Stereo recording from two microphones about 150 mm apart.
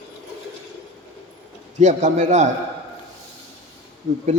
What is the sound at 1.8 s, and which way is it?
Speech, 55° right (ahead or behind).